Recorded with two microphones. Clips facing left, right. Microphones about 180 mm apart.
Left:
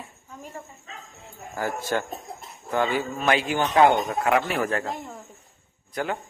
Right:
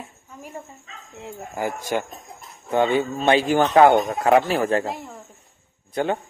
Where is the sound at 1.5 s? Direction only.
20° right (ahead or behind).